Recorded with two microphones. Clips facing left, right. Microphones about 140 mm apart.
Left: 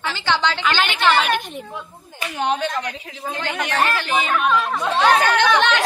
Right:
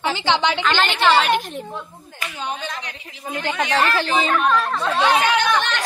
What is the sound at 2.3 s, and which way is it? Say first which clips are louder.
Speech: left 8 dB; 70° left (ahead or behind).